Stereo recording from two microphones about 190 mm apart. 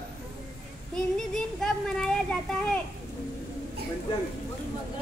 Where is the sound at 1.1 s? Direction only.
5° left (ahead or behind).